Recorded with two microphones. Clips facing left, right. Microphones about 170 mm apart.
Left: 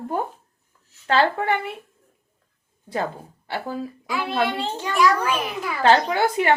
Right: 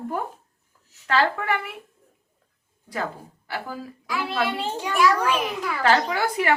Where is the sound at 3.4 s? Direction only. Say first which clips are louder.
Left 4 dB; 25° left (ahead or behind).